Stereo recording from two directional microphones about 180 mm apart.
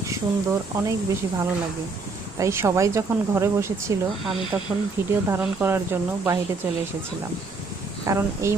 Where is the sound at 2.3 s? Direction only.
15° right (ahead or behind).